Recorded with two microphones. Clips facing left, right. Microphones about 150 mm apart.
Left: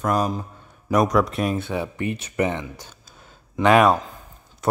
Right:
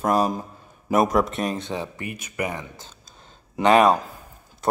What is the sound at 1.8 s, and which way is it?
Speech, 25° left (ahead or behind).